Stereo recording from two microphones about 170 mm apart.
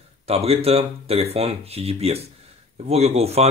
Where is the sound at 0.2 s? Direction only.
35° right (ahead or behind).